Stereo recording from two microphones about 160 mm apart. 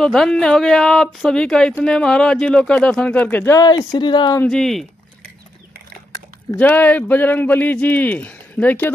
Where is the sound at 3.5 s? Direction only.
25° left (ahead or behind).